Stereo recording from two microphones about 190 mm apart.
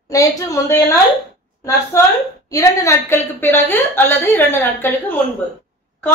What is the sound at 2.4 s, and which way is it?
A woman's voice, 15° left (ahead or behind).